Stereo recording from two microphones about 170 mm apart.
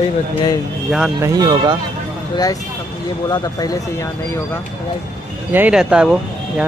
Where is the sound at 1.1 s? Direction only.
20° right (ahead or behind).